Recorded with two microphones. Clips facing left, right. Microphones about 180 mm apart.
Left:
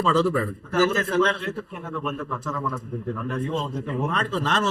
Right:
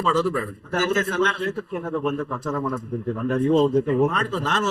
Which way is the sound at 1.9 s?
35° right (ahead or behind).